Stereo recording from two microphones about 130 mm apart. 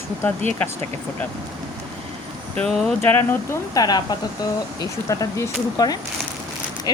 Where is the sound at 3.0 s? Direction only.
20° left (ahead or behind).